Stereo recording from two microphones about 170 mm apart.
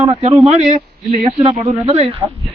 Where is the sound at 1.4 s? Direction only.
35° right (ahead or behind).